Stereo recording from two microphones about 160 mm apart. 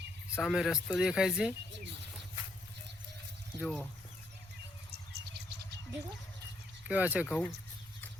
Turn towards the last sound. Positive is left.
turn(degrees=-10)  # may be behind; listen again after turning